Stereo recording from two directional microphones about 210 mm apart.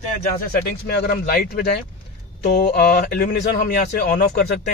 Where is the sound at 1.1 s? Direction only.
45° left (ahead or behind).